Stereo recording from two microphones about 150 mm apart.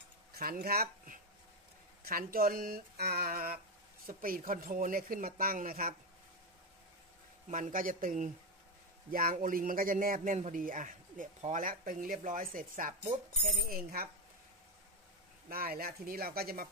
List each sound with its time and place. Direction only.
0.3 s speech: 90° right
2.0 s speech: 75° right (ahead or behind)
7.4 s a man's voice: 55° right (ahead or behind)
13.6 s speech: 80° right
15.5 s speech: 85° right